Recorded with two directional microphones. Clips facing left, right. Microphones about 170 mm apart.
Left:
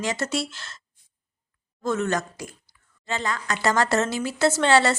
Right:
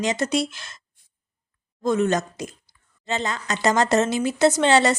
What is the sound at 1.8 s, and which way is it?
A woman's voice, 15° right (ahead or behind).